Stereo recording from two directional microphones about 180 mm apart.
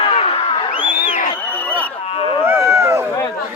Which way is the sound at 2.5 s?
15° right (ahead or behind).